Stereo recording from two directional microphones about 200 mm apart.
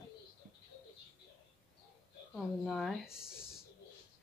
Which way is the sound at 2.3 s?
Centre (ahead or behind).